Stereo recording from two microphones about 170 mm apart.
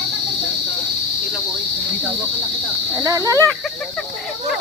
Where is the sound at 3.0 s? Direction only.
20° right (ahead or behind).